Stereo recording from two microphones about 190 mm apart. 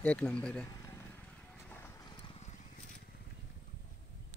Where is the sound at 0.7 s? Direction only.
15° left (ahead or behind).